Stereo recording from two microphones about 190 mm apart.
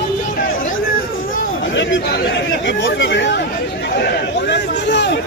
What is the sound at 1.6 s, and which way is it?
Chatter, 75° left (ahead or behind).